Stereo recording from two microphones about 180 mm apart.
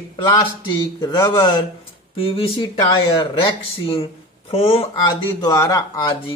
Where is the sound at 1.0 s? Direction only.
20° left (ahead or behind).